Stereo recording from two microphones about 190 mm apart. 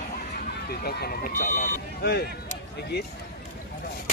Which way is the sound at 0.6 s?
55° left (ahead or behind).